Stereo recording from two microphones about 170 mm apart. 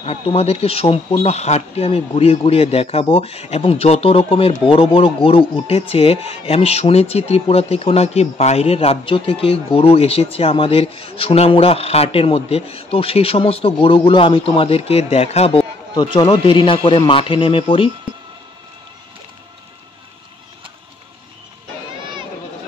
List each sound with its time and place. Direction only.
0.0 s speech: 35° left (ahead or behind)
15.9 s a man's voice: 25° left (ahead or behind)